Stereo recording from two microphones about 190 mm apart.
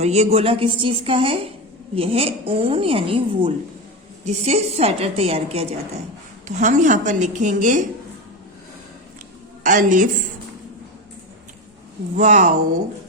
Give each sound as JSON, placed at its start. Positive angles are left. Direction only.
{"t": 0.0, "sound": "a woman's voice", "side_deg": -35}
{"t": 9.6, "sound": "a woman's voice", "side_deg": -45}
{"t": 12.1, "sound": "a woman's voice", "side_deg": -40}